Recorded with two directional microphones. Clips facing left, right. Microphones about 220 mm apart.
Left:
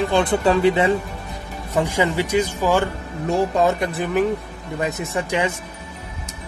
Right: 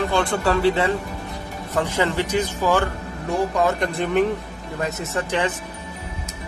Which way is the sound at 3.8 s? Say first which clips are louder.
Even; 5° left (ahead or behind).